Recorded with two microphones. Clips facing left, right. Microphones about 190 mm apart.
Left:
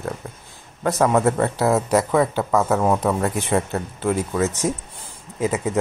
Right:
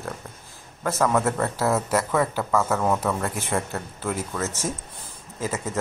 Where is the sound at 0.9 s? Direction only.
30° left (ahead or behind).